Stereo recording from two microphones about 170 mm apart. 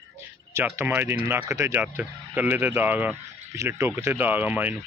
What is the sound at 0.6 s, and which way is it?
Speech, 15° right (ahead or behind).